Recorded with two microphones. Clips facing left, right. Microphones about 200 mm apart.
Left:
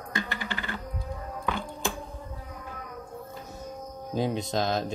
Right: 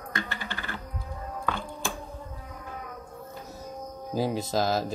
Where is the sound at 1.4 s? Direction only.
15° left (ahead or behind).